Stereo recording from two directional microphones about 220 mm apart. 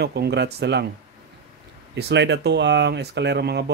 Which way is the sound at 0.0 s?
50° right (ahead or behind).